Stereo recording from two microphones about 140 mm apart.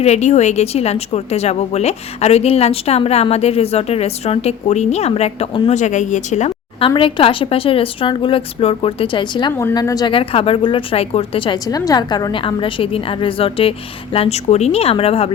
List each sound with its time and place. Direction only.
0.0 s a woman's voice: 55° left (ahead or behind)
5.7 s a woman's voice: 60° left (ahead or behind)
6.8 s a woman's voice: 40° left (ahead or behind)
9.5 s a woman's voice: 15° left (ahead or behind)
10.1 s a woman's voice: 40° left (ahead or behind)